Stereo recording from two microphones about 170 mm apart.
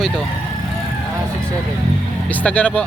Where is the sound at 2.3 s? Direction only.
10° left (ahead or behind).